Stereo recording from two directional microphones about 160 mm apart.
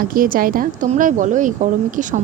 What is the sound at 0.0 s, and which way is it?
A woman's voice, 60° right (ahead or behind).